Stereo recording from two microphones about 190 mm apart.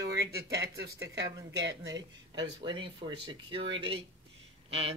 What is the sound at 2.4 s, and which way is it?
Speech, 25° right (ahead or behind).